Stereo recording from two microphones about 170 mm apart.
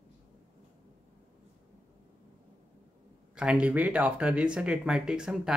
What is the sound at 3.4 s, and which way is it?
Speech, 5° right (ahead or behind).